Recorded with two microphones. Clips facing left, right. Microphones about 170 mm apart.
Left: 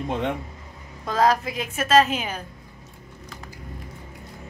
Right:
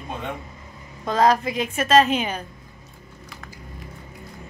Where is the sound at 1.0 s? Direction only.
5° left (ahead or behind).